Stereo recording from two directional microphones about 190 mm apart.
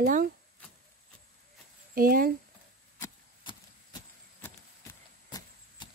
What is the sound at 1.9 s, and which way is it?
Speech, 50° right (ahead or behind).